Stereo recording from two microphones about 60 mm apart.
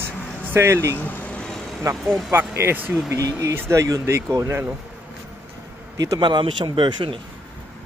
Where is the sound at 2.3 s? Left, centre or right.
Right.